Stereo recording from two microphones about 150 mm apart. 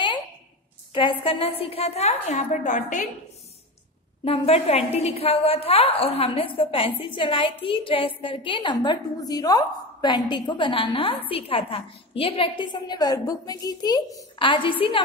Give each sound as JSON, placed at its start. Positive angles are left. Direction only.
{"t": 0.9, "sound": "a woman's voice", "side_deg": 35}
{"t": 4.2, "sound": "a woman's voice", "side_deg": 40}